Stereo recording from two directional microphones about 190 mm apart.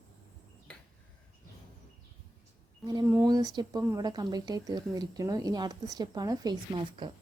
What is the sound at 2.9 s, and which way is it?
Speech, 15° right (ahead or behind).